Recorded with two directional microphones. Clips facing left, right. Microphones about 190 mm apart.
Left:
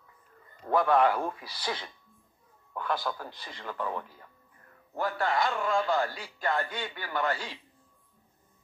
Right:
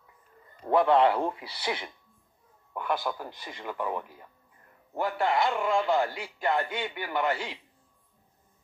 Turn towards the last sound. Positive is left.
turn(degrees=-20)  # may be behind; listen again after turning